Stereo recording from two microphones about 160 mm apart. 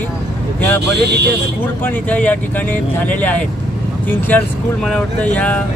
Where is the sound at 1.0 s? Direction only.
90° right.